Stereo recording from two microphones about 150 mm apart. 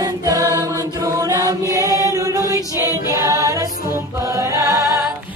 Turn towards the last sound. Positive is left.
turn(degrees=-20)  # may be behind; listen again after turning